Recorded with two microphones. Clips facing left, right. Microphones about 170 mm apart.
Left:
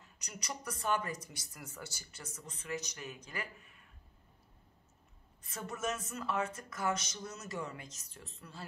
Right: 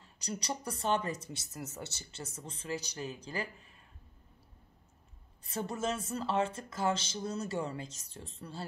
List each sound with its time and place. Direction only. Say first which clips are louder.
0.0 s speech: right 9 dB; 30° right (ahead or behind)
5.4 s speech: right 4 dB; 30° right (ahead or behind)